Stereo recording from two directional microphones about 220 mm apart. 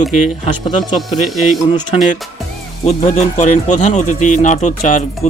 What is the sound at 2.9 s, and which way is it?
Speech, 30° left (ahead or behind).